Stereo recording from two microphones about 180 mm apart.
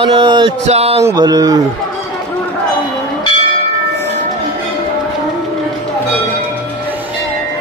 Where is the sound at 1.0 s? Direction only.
20° right (ahead or behind).